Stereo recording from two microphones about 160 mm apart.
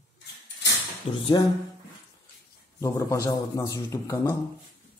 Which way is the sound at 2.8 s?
20° left (ahead or behind).